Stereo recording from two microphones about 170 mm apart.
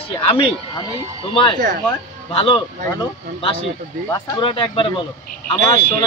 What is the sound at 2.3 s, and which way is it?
A man's voice, 30° left (ahead or behind).